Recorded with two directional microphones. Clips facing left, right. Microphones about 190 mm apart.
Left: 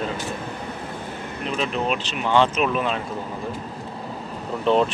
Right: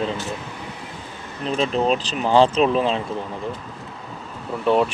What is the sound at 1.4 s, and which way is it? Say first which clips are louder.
Speech: right 5 dB; 35° right (ahead or behind).